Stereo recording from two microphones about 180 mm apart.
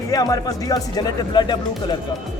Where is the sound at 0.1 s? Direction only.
20° left (ahead or behind).